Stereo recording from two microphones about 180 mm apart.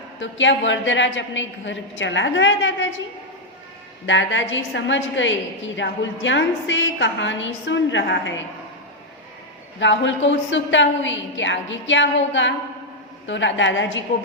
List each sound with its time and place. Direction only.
0.2 s a woman's voice: 90° left
4.0 s a woman's voice: 90° left
9.8 s a woman's voice: 90° left